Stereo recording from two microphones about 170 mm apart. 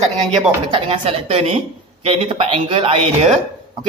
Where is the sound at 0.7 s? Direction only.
30° right (ahead or behind).